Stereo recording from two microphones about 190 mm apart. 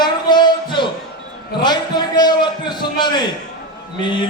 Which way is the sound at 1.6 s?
20° left (ahead or behind).